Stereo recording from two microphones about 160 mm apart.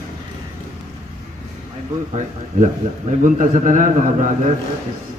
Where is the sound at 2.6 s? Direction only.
50° right (ahead or behind).